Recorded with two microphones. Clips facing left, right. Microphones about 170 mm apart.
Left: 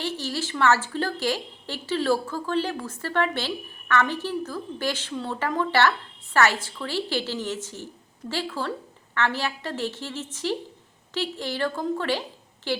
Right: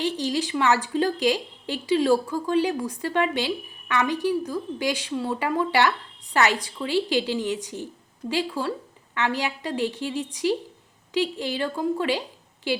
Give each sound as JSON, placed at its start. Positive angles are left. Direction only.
{"t": 0.0, "sound": "a woman's voice", "side_deg": -15}